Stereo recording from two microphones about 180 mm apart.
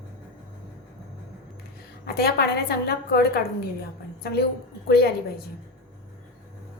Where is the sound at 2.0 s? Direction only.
60° left (ahead or behind).